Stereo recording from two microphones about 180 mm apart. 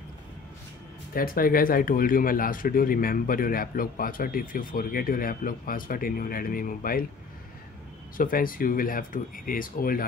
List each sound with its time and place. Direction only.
1.1 s speech: 55° left (ahead or behind)
8.2 s speech: 50° left (ahead or behind)